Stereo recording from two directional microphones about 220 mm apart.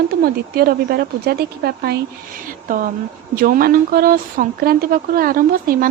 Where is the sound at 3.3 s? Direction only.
40° right (ahead or behind).